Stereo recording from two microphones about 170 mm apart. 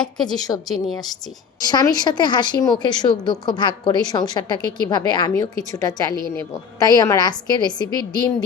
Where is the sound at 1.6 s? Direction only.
25° left (ahead or behind).